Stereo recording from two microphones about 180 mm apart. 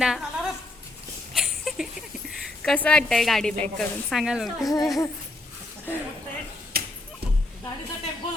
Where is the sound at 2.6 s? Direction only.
5° left (ahead or behind).